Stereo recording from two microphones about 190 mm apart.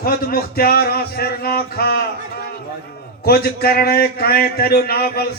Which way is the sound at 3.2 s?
55° left (ahead or behind).